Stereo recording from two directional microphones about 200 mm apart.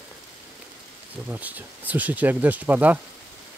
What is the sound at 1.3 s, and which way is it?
Speech, 10° right (ahead or behind).